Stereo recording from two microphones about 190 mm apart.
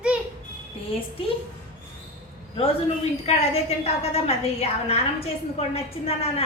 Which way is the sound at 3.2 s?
35° left (ahead or behind).